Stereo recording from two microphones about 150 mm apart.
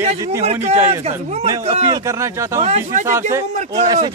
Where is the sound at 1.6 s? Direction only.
40° right (ahead or behind).